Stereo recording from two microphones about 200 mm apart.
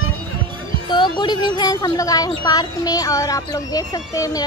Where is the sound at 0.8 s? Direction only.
20° left (ahead or behind).